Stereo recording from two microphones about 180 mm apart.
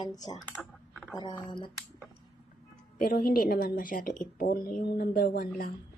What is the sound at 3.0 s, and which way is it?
A woman's voice, 55° left (ahead or behind).